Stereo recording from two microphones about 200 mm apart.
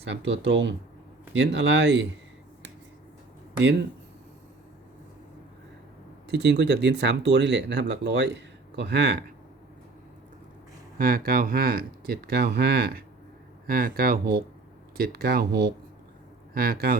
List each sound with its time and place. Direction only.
0.1 s speech: 65° right (ahead or behind)
6.2 s speech: 60° right (ahead or behind)
10.9 s speech: 45° right (ahead or behind)